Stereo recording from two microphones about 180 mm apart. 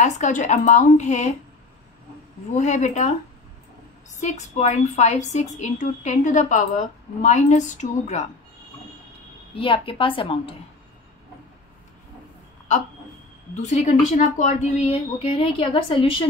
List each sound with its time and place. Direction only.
0.0 s a woman's voice: 40° left (ahead or behind)
2.5 s a woman's voice: 40° left (ahead or behind)
4.2 s a woman's voice: 40° left (ahead or behind)
9.6 s a woman's voice: 30° left (ahead or behind)
13.6 s a woman's voice: 40° left (ahead or behind)